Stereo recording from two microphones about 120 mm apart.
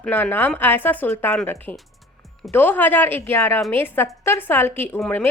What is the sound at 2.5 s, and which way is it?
Speech, 15° left (ahead or behind).